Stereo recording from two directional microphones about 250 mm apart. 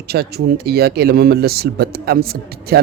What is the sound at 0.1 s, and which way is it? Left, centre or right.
Speech, right.